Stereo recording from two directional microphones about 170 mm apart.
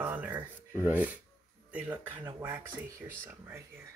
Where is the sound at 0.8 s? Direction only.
10° right (ahead or behind).